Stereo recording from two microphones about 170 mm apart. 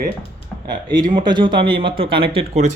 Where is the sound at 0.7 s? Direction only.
25° right (ahead or behind).